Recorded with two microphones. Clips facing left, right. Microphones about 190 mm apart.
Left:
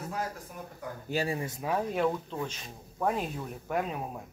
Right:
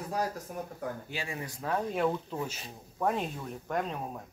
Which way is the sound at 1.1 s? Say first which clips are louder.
Left 8 dB; 40° left (ahead or behind).